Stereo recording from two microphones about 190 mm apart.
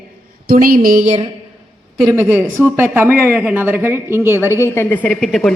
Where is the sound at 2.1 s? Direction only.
10° right (ahead or behind).